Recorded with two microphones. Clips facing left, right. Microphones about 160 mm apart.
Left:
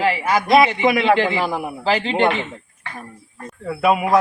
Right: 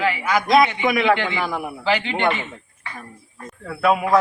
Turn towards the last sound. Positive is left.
turn(degrees=10)  # may be behind; listen again after turning